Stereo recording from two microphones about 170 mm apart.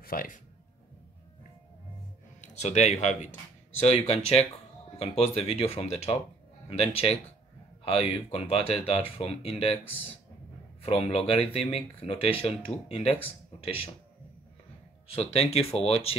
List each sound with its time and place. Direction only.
0.0 s a man's voice: 55° left (ahead or behind)
2.4 s speech: 40° left (ahead or behind)
10.8 s speech: 35° left (ahead or behind)
15.0 s speech: 35° left (ahead or behind)